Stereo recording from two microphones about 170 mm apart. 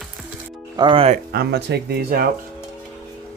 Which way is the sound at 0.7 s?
30° right (ahead or behind).